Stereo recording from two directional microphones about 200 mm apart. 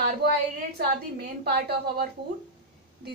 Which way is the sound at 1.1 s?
50° right (ahead or behind).